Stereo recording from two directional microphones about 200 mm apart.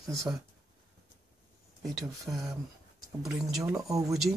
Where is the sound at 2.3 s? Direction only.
10° right (ahead or behind).